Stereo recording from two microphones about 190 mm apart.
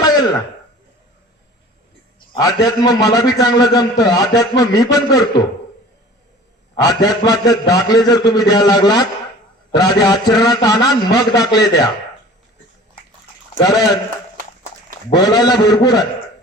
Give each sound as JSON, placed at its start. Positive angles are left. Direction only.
{"t": 2.3, "sound": "a man's voice", "side_deg": 20}
{"t": 6.8, "sound": "a man's voice", "side_deg": 20}
{"t": 13.6, "sound": "a man's voice", "side_deg": 20}
{"t": 15.1, "sound": "a man's voice", "side_deg": 20}